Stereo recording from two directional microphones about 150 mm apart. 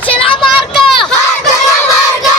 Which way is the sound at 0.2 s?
35° left (ahead or behind).